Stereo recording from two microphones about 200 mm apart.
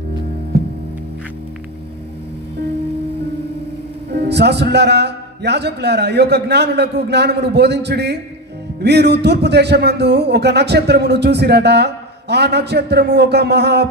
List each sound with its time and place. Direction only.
4.1 s speech: 55° right (ahead or behind)